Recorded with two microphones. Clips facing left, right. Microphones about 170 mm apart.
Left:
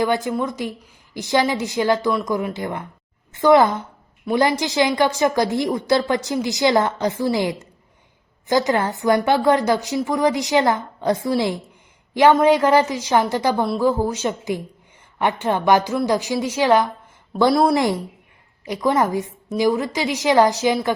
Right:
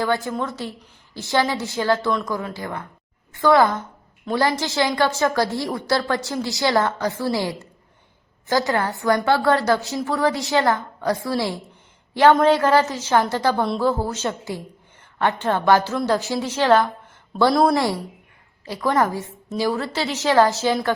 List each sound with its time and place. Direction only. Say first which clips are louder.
0.0 s a woman's voice: left 3 dB; 15° left (ahead or behind)
17.5 s speech: left 1 dB; 5° left (ahead or behind)
17.7 s a woman's voice: left 2 dB; 20° left (ahead or behind)